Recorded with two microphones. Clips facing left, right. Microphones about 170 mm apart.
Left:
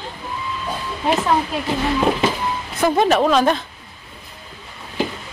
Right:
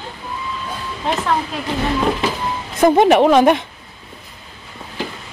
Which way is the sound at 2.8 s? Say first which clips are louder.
Right 5 dB; 20° right (ahead or behind).